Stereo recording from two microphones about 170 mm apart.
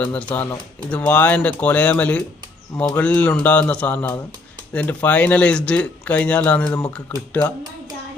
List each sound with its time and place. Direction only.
0.0 s speech: 5° left (ahead or behind)